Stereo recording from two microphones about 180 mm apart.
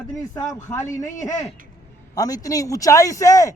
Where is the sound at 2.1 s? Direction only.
20° left (ahead or behind).